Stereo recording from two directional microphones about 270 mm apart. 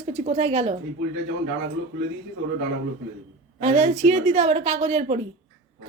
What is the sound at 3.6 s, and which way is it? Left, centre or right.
A woman's voice, right.